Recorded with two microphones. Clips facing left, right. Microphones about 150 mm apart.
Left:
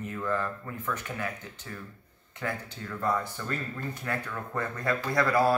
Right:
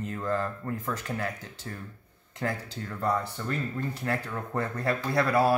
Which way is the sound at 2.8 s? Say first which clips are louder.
Right 1 dB; 30° right (ahead or behind).